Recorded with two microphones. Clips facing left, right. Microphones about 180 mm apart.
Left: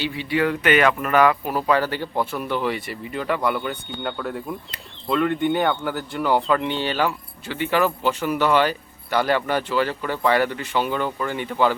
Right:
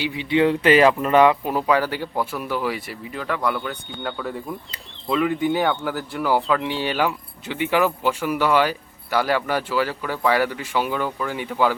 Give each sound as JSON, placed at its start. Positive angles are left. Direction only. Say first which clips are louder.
{"t": 0.0, "sound": "speech", "louder": "right 3 dB", "side_deg": -15}
{"t": 1.6, "sound": "speech", "louder": "left 1 dB", "side_deg": -10}